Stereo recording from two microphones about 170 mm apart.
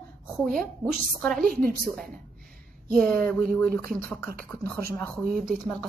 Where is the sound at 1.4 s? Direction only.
60° right (ahead or behind).